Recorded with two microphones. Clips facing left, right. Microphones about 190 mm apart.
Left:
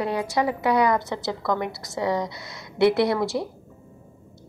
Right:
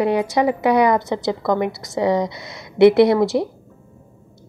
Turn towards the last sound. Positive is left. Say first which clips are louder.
# right 8 dB
turn(degrees=-20)  # may be behind; listen again after turning